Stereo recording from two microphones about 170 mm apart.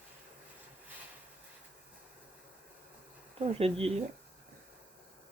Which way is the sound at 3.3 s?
35° right (ahead or behind).